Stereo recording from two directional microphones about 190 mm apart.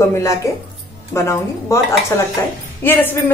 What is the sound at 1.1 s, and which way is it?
Speech, 15° left (ahead or behind).